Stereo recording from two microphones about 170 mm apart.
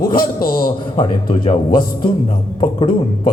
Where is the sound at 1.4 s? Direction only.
25° left (ahead or behind).